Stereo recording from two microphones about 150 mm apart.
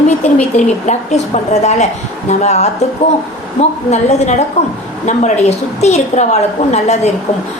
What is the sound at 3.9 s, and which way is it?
A woman's voice, 50° left (ahead or behind).